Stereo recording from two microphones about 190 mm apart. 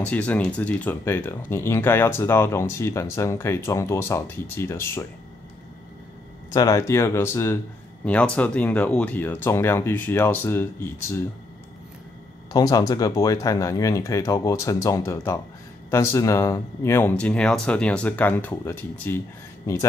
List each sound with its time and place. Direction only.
0.0 s speech: 10° left (ahead or behind)
6.5 s speech: 20° left (ahead or behind)
12.5 s speech: 20° left (ahead or behind)